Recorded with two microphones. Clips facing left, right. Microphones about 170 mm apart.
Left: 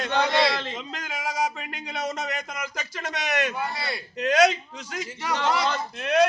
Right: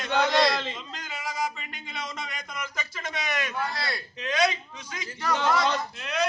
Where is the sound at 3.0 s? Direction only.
70° left (ahead or behind).